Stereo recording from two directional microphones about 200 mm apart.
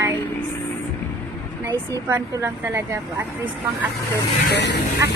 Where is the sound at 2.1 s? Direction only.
15° right (ahead or behind).